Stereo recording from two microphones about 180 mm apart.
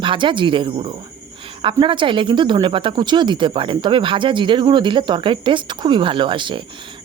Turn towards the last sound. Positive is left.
turn(degrees=-25)  # may be behind; listen again after turning